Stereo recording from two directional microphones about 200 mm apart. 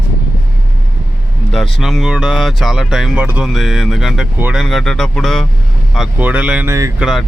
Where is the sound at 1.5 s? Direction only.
Centre (ahead or behind).